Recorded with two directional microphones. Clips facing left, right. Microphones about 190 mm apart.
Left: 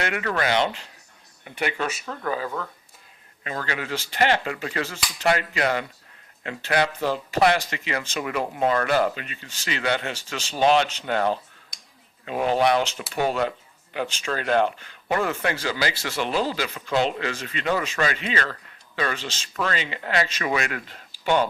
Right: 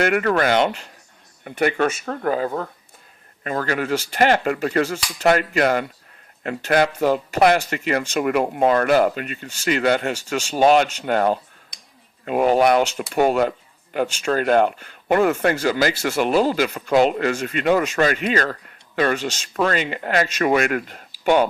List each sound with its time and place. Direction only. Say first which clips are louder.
0.0 s speech: right 7 dB; 50° right (ahead or behind)